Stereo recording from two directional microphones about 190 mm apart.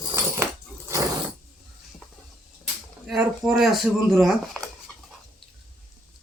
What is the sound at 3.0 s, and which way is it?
Speech, centre (ahead or behind).